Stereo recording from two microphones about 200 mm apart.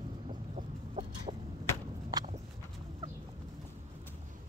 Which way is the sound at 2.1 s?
20° right (ahead or behind).